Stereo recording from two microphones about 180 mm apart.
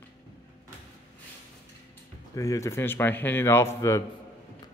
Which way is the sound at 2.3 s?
20° left (ahead or behind).